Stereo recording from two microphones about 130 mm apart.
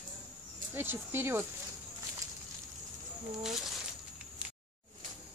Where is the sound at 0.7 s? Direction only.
15° right (ahead or behind).